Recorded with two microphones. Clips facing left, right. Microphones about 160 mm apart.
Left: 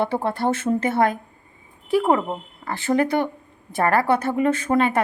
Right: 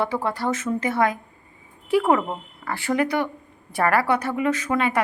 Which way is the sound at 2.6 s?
20° left (ahead or behind).